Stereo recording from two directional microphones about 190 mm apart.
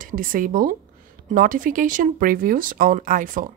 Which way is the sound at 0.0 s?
45° right (ahead or behind).